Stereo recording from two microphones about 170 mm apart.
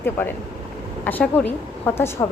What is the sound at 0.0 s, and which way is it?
A woman's voice, 15° left (ahead or behind).